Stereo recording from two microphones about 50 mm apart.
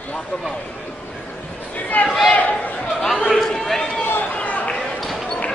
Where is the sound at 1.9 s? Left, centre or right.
Left.